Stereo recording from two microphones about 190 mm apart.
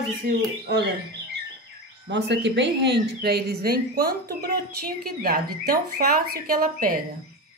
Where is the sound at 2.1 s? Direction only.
70° right (ahead or behind); by 7.0 s 50° right (ahead or behind).